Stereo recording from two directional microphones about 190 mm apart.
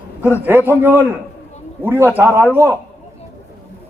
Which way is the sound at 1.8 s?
10° right (ahead or behind).